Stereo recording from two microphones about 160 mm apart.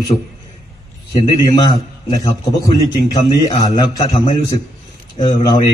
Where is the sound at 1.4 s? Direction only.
25° left (ahead or behind).